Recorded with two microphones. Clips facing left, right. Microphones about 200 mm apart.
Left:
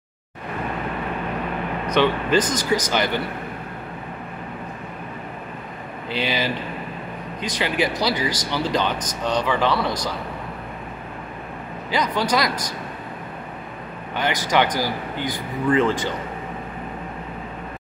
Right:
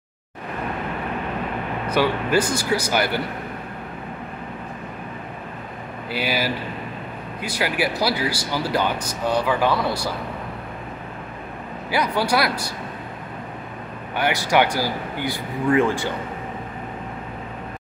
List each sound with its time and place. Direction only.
1.9 s speech: 10° right (ahead or behind)
6.0 s speech: 10° right (ahead or behind)
11.9 s speech: 10° right (ahead or behind)
14.1 s speech: 10° right (ahead or behind)